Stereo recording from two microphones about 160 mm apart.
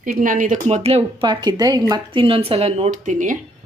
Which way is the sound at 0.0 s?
60° right (ahead or behind).